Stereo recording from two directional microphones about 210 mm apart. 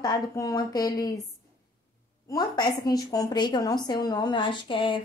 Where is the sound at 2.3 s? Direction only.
20° left (ahead or behind).